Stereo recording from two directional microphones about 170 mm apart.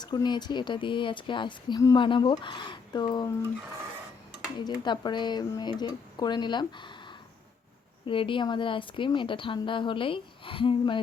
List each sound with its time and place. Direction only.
0.0 s a woman's voice: 25° left (ahead or behind)
4.8 s a woman's voice: 25° left (ahead or behind)